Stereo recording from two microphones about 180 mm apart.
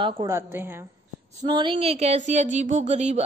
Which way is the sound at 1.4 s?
25° right (ahead or behind).